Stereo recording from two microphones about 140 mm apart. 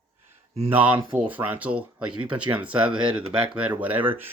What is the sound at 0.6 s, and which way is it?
Speech, 10° right (ahead or behind).